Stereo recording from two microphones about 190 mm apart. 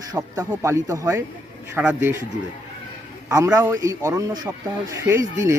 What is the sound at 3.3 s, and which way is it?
Speech, 15° right (ahead or behind).